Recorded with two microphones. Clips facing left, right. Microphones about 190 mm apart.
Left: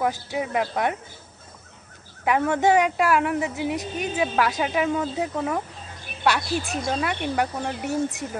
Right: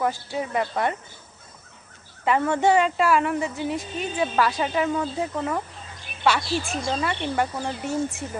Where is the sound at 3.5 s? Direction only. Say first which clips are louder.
Left 1 dB; 15° left (ahead or behind).